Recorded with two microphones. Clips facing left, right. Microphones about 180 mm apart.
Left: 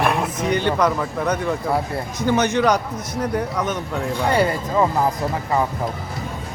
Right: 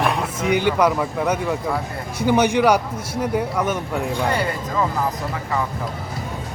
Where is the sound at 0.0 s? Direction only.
Centre (ahead or behind).